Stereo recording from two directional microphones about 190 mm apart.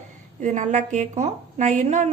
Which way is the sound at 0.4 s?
40° right (ahead or behind).